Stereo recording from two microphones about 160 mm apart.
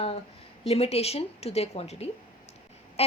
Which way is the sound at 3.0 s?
40° left (ahead or behind).